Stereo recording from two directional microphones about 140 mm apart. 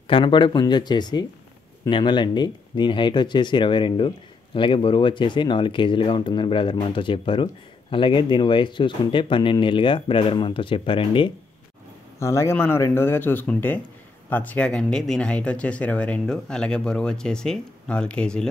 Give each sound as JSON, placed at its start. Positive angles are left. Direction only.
{"t": 0.1, "sound": "speech", "side_deg": 35}
{"t": 12.2, "sound": "speech", "side_deg": 20}